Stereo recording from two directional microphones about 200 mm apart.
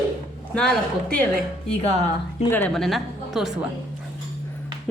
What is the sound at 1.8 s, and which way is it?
Speech, 30° left (ahead or behind).